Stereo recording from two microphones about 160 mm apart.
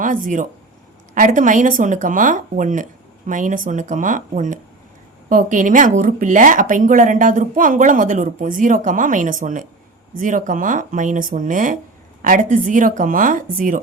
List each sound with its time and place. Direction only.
0.0 s speech: 55° right (ahead or behind)